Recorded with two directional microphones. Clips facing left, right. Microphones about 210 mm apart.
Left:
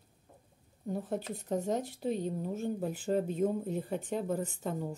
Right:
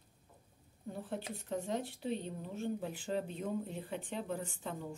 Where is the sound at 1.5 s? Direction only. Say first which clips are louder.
Left 5 dB; 45° left (ahead or behind).